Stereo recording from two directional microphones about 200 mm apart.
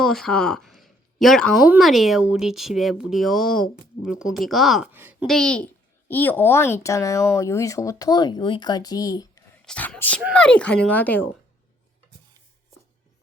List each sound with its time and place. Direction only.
0.0 s speech: centre (ahead or behind)
5.2 s speech: 5° left (ahead or behind)
9.6 s speech: 5° left (ahead or behind)